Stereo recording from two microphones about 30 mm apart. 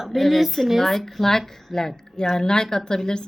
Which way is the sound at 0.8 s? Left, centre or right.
Centre.